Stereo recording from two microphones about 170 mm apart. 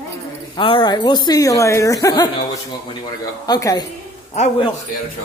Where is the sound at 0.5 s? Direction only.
30° left (ahead or behind).